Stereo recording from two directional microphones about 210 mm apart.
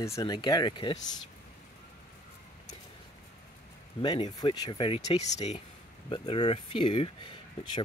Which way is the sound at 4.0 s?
25° left (ahead or behind).